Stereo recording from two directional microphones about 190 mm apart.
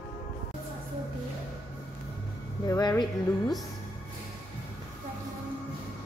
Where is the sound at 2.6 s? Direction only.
20° left (ahead or behind).